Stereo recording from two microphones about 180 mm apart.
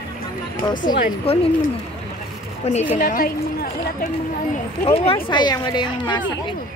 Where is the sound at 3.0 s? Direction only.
55° left (ahead or behind).